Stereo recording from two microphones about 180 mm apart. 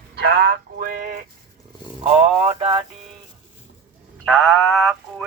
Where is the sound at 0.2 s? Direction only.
60° right (ahead or behind); by 2.8 s 30° right (ahead or behind).